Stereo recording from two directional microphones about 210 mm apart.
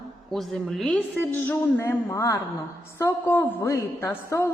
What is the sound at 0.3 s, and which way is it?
A woman's voice, centre (ahead or behind).